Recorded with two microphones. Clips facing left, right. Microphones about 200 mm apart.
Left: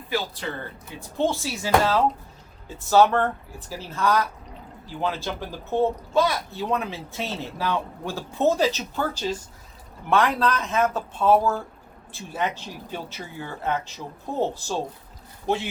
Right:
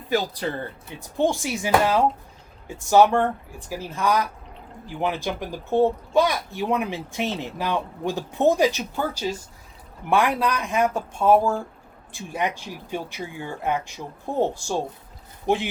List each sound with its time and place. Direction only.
0.1 s speech: 40° right (ahead or behind)
1.2 s speech: 15° right (ahead or behind)